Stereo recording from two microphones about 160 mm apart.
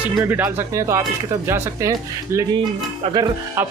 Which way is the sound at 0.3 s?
15° right (ahead or behind).